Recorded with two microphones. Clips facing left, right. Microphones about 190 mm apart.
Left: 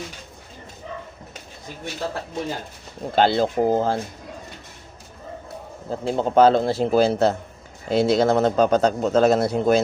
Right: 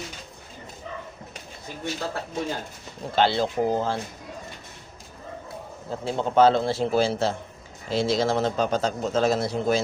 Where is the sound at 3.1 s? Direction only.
45° left (ahead or behind).